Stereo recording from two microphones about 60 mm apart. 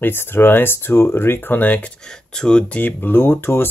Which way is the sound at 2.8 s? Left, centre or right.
Left.